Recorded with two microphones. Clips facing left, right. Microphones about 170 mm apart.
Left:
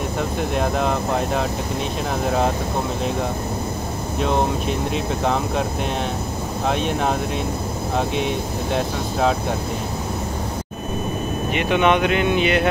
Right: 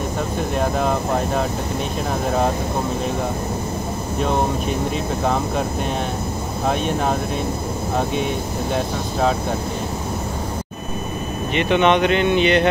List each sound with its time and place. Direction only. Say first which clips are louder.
0.6 s speech: right 1 dB; centre (ahead or behind)
4.9 s speech: even; centre (ahead or behind)
6.7 s speech: right 1 dB; centre (ahead or behind)
11.5 s speech: right 2 dB; 5° left (ahead or behind)